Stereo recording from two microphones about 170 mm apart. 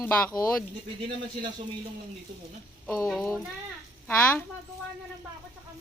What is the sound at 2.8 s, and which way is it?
Speech, centre (ahead or behind).